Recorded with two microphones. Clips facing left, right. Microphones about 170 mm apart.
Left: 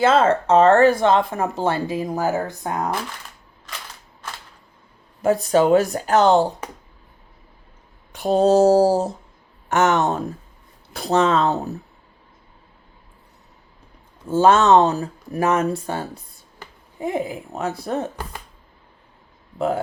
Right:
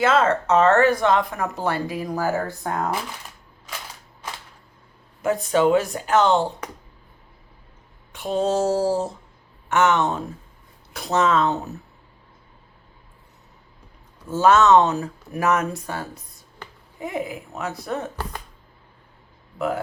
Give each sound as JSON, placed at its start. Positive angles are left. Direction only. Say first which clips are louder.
{"t": 0.0, "sound": "speech", "louder": "left 3 dB", "side_deg": 30}
{"t": 5.2, "sound": "speech", "louder": "left 2 dB", "side_deg": 35}
{"t": 8.1, "sound": "speech", "louder": "left 6 dB", "side_deg": 35}
{"t": 10.9, "sound": "speech", "louder": "left 2 dB", "side_deg": 30}
{"t": 14.3, "sound": "speech", "louder": "left 1 dB", "side_deg": 30}
{"t": 19.5, "sound": "speech", "louder": "left 3 dB", "side_deg": 30}